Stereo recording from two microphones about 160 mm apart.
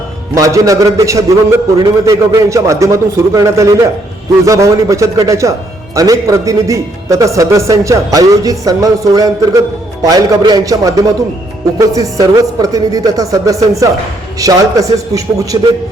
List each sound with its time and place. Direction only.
0.3 s a man's voice: 20° right (ahead or behind)